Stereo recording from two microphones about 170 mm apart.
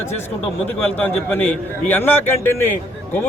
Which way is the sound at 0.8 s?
10° left (ahead or behind).